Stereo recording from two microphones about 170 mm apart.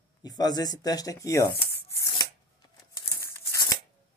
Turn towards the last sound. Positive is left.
turn(degrees=20)  # may be behind; listen again after turning